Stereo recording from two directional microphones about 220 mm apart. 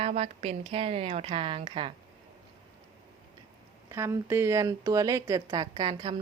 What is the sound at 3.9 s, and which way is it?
A woman's voice, 15° right (ahead or behind).